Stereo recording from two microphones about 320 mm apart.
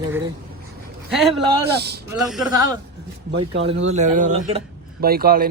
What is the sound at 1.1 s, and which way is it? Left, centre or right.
Speech, centre.